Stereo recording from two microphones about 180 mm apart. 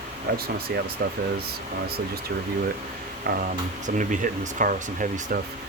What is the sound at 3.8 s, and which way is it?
Speech, 45° right (ahead or behind).